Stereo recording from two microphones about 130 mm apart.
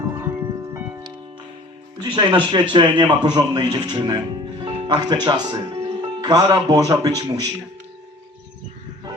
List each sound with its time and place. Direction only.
2.0 s speech: 35° right (ahead or behind)